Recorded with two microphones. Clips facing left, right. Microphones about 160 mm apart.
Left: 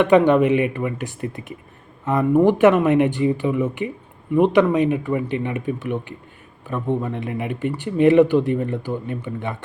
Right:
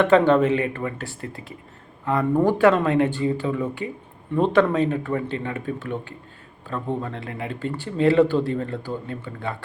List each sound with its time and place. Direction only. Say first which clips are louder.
0.0 s speech: left 2 dB; 15° left (ahead or behind)